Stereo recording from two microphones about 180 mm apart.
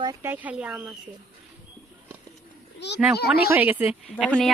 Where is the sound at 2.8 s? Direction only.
75° left (ahead or behind).